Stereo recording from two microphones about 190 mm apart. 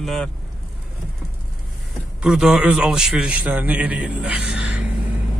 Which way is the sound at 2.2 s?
5° right (ahead or behind).